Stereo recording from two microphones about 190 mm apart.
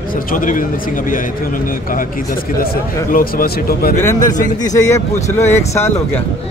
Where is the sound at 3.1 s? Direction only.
50° left (ahead or behind).